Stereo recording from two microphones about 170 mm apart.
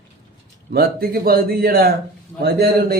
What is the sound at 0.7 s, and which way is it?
A man's voice, 65° right (ahead or behind).